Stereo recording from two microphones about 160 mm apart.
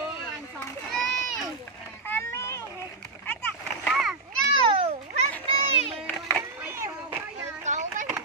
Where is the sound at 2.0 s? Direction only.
15° left (ahead or behind).